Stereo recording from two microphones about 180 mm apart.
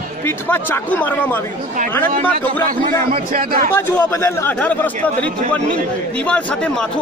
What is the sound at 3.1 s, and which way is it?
Speech, 50° right (ahead or behind).